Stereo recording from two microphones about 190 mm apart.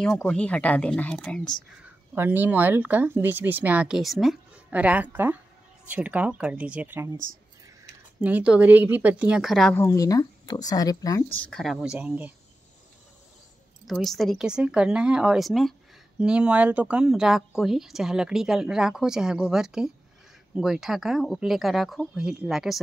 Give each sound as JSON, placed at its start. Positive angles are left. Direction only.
{"t": 0.0, "sound": "a woman's voice", "side_deg": 5}
{"t": 2.1, "sound": "speech", "side_deg": -10}
{"t": 8.2, "sound": "speech", "side_deg": -10}
{"t": 9.8, "sound": "speech", "side_deg": 20}
{"t": 11.3, "sound": "a woman's voice", "side_deg": 5}
{"t": 13.8, "sound": "a woman's voice", "side_deg": 0}